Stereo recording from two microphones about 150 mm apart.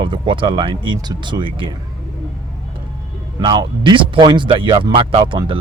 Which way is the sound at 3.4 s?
30° right (ahead or behind).